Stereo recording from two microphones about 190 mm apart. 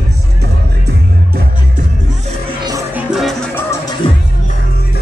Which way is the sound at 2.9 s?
Centre (ahead or behind).